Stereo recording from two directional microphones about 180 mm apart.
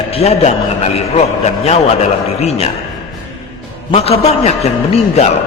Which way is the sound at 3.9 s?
35° left (ahead or behind).